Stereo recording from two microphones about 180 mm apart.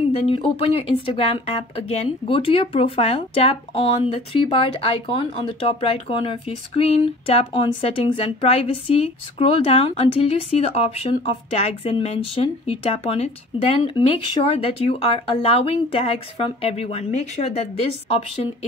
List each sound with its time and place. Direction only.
0.1 s speech: 30° left (ahead or behind)